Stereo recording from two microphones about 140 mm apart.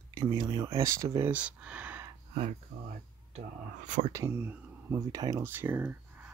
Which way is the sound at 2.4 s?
60° right (ahead or behind).